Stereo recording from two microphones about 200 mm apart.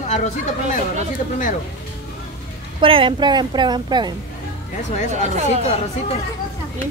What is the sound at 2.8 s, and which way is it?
A woman's voice, 25° right (ahead or behind).